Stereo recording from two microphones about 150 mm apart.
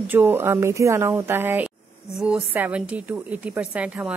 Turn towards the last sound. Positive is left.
turn(degrees=-10)  # may be behind; listen again after turning